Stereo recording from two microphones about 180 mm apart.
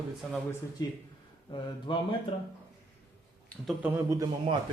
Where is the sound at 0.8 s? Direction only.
20° left (ahead or behind).